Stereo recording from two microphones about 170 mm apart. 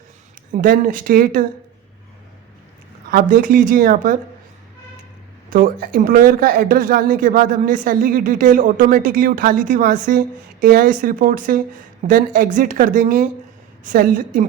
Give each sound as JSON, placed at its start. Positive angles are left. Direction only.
{"t": 0.5, "sound": "speech", "side_deg": -55}
{"t": 3.1, "sound": "speech", "side_deg": -60}
{"t": 5.5, "sound": "speech", "side_deg": -55}